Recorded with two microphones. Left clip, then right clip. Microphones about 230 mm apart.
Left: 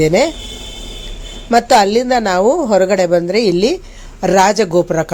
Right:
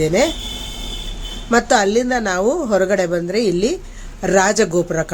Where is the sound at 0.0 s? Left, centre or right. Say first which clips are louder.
Left 4 dB; centre.